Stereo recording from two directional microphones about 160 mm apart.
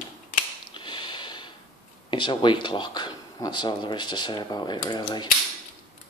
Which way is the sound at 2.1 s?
30° left (ahead or behind).